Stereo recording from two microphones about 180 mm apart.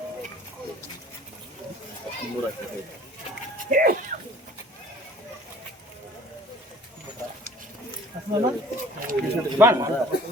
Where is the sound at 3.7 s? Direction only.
45° right (ahead or behind).